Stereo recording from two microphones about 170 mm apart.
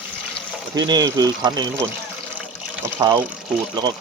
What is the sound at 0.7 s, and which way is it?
Speech, 25° right (ahead or behind).